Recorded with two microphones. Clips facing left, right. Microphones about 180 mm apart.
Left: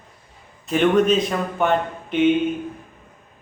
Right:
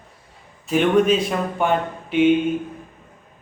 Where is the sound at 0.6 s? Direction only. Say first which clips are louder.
Even; 5° right (ahead or behind).